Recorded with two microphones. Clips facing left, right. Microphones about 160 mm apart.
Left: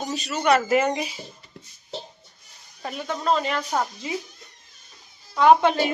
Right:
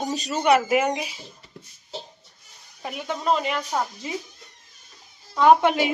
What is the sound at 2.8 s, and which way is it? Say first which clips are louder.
Speech: even; 15° right (ahead or behind).